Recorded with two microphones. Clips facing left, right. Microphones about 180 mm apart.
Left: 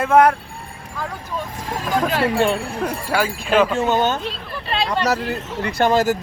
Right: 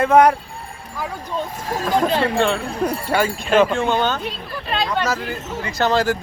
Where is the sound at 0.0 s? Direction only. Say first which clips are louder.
Right 1 dB; 5° left (ahead or behind).